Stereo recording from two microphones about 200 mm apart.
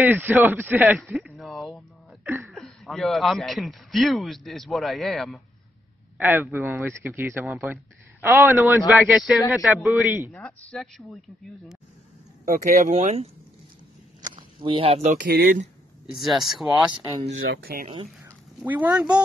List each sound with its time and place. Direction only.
0.0 s speech: 10° right (ahead or behind)
2.2 s speech: 10° right (ahead or behind)
2.5 s a man's voice: centre (ahead or behind)
6.1 s a man's voice: 10° right (ahead or behind)
12.4 s speech: 40° right (ahead or behind)
14.3 s speech: 25° right (ahead or behind)
15.2 s speech: 45° right (ahead or behind)
16.2 s a man's voice: centre (ahead or behind)
16.9 s speech: 15° right (ahead or behind)
17.3 s speech: 70° right (ahead or behind)
17.6 s speech: 45° right (ahead or behind)
18.2 s a sound: 10° right (ahead or behind)